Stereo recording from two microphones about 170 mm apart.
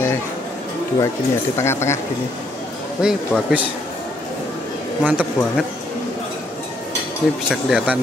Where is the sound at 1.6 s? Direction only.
15° left (ahead or behind).